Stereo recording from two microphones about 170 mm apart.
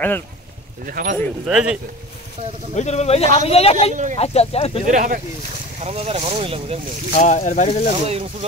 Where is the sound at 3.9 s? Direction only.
50° right (ahead or behind).